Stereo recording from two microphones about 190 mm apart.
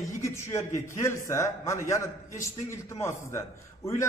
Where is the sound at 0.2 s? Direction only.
15° left (ahead or behind).